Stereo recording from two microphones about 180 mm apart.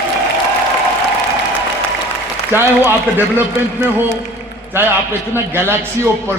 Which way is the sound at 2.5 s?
10° right (ahead or behind).